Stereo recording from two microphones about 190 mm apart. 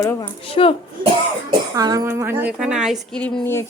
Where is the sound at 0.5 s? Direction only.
30° left (ahead or behind).